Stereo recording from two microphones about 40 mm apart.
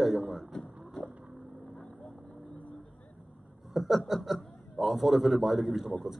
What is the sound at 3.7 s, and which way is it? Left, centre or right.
Snicker, centre.